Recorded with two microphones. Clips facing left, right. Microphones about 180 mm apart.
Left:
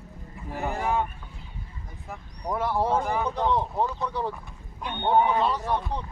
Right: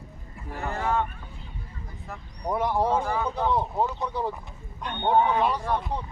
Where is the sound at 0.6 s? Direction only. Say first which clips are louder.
Even; 15° left (ahead or behind).